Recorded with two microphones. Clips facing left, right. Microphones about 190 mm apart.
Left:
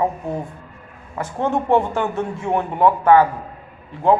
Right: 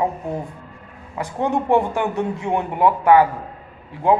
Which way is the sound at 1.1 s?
15° right (ahead or behind).